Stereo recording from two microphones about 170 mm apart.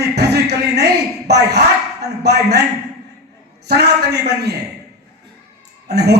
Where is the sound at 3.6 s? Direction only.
75° right (ahead or behind).